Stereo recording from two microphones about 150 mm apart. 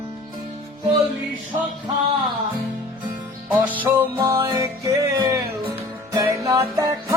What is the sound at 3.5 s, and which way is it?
Music, 10° right (ahead or behind).